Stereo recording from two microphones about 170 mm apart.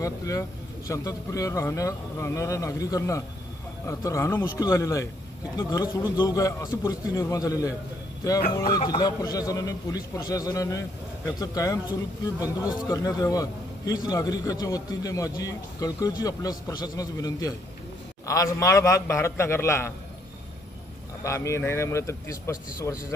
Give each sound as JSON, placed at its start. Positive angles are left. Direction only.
{"t": 0.0, "sound": "a man's voice", "side_deg": 20}
{"t": 8.8, "sound": "a man's voice", "side_deg": 25}
{"t": 21.2, "sound": "speech", "side_deg": 15}